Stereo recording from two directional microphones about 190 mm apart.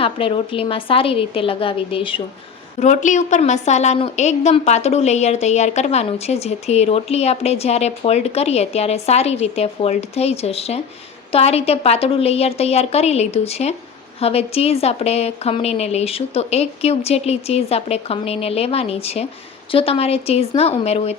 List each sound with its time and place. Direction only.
0.0 s a woman's voice: 30° left (ahead or behind)
2.8 s a woman's voice: 40° left (ahead or behind)